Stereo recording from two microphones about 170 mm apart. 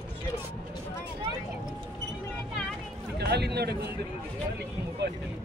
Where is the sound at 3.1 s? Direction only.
75° right (ahead or behind).